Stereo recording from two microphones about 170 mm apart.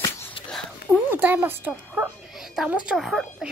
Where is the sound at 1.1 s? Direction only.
10° right (ahead or behind).